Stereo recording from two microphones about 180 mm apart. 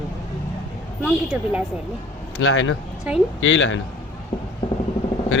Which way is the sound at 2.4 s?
90° left.